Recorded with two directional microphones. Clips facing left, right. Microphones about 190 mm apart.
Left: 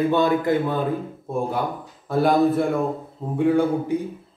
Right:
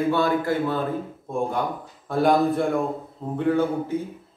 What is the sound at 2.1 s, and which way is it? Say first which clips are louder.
Speech: left 2 dB; centre (ahead or behind).